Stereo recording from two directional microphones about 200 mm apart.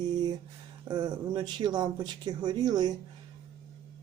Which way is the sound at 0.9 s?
20° right (ahead or behind).